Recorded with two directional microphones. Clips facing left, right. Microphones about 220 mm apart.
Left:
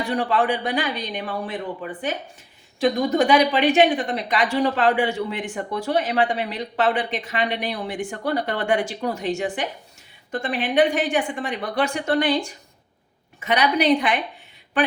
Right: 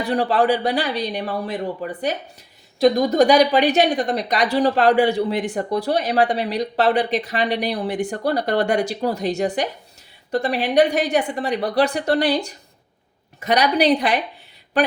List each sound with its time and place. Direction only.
0.1 s a woman's voice: 35° right (ahead or behind)